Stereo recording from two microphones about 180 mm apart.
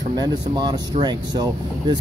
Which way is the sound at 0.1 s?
25° right (ahead or behind).